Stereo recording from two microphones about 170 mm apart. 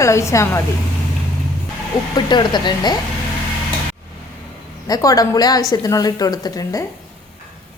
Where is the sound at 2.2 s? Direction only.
25° left (ahead or behind).